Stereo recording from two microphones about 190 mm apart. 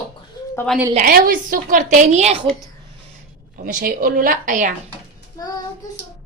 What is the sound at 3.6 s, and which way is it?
A woman's voice, 45° right (ahead or behind).